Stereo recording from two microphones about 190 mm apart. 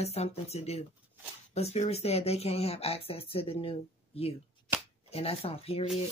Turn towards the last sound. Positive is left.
turn(degrees=30)  # may be behind; listen again after turning